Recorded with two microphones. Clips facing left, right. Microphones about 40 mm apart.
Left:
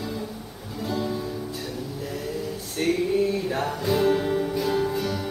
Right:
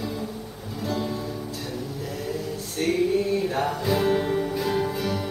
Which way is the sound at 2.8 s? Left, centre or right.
Centre.